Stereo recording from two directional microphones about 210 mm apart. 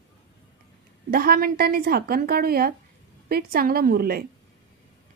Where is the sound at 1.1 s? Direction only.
45° right (ahead or behind).